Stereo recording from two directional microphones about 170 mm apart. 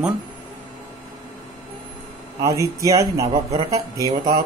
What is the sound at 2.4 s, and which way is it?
Speech, 20° right (ahead or behind).